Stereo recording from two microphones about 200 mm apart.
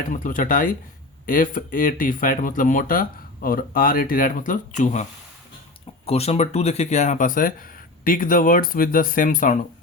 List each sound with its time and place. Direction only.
0.1 s speech: 40° left (ahead or behind)
6.1 s speech: 30° left (ahead or behind)